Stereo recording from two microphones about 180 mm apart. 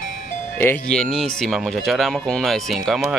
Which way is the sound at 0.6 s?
5° left (ahead or behind).